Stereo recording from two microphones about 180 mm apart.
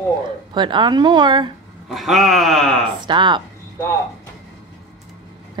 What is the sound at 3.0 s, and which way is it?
Speech, 25° right (ahead or behind).